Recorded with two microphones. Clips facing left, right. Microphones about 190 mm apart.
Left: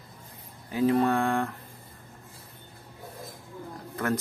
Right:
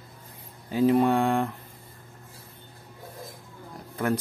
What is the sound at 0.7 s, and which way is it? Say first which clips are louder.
Mantra: right 2 dB; 25° right (ahead or behind).